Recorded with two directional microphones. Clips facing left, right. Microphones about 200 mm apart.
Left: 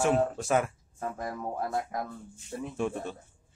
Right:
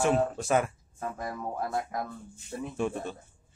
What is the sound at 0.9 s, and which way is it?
Speech, 40° left (ahead or behind).